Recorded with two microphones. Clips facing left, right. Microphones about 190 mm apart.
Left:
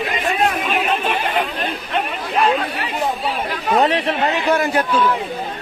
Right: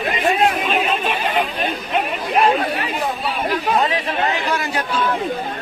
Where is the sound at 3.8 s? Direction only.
70° left (ahead or behind).